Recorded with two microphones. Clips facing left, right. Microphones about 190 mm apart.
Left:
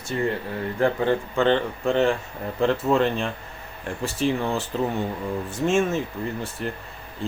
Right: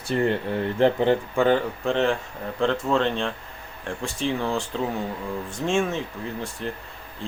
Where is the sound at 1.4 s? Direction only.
10° right (ahead or behind).